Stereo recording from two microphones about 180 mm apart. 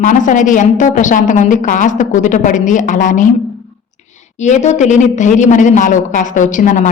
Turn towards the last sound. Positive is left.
turn(degrees=45)  # may be behind; listen again after turning